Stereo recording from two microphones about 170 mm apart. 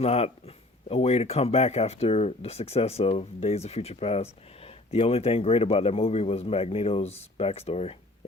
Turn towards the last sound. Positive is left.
turn(degrees=35)  # may be behind; listen again after turning